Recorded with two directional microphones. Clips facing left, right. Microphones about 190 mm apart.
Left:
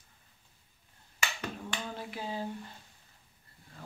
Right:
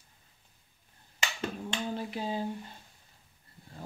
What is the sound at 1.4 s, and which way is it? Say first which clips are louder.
Hands: right 4 dB; 20° right (ahead or behind).